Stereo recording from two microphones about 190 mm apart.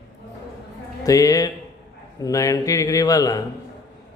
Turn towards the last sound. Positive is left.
turn(degrees=20)  # may be behind; listen again after turning